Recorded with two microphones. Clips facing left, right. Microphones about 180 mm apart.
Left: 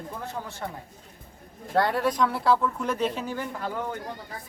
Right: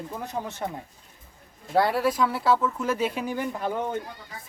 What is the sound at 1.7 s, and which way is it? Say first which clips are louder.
Speech: right 1 dB; 5° right (ahead or behind).